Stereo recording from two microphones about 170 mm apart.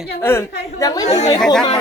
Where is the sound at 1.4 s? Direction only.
5° left (ahead or behind).